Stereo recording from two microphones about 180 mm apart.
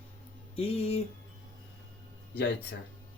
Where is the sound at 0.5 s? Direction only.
35° left (ahead or behind).